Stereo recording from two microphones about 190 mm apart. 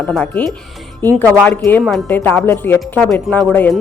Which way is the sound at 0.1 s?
5° left (ahead or behind).